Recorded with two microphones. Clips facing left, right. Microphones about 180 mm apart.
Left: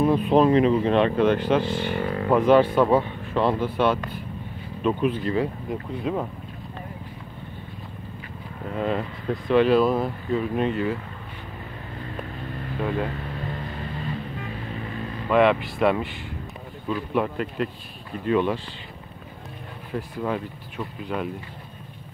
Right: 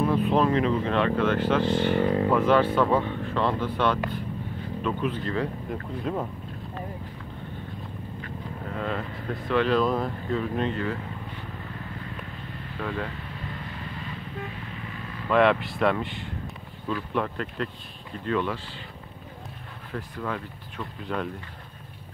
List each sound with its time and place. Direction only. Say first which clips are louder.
0.0 s speech: left 4 dB; 15° left (ahead or behind)
8.7 s speech: left 6 dB; 20° left (ahead or behind)
15.2 s speech: left 2 dB; 5° left (ahead or behind)
19.9 s speech: left 5 dB; 15° left (ahead or behind)
20.8 s speech: left 2 dB; 5° left (ahead or behind)